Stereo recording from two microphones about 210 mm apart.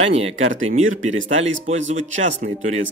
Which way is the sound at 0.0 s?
30° right (ahead or behind).